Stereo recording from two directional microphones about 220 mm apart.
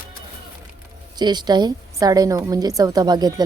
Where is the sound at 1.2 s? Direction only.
20° right (ahead or behind).